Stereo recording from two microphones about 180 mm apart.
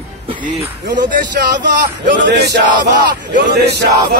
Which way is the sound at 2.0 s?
75° right (ahead or behind).